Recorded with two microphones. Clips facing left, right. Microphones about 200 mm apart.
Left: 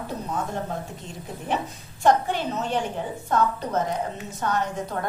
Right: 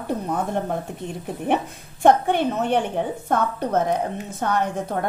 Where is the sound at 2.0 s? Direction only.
60° right (ahead or behind).